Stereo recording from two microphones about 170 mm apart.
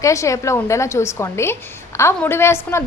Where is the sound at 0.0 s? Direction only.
20° left (ahead or behind).